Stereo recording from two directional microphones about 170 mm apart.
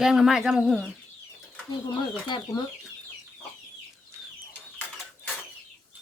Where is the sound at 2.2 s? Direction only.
25° left (ahead or behind).